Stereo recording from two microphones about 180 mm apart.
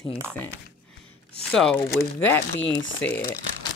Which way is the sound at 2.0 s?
90° left.